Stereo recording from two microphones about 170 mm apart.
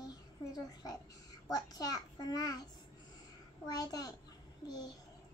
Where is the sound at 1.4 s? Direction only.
20° left (ahead or behind).